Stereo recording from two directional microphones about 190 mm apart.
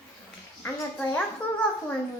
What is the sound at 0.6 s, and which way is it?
Speech, 5° left (ahead or behind).